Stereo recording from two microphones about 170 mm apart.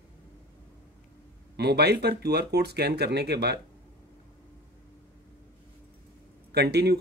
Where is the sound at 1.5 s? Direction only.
70° right (ahead or behind).